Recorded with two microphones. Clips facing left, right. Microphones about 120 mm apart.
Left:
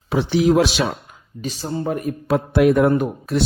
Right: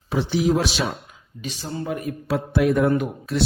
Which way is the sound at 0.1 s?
75° left (ahead or behind).